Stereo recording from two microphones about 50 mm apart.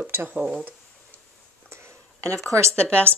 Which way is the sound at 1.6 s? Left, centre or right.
Right.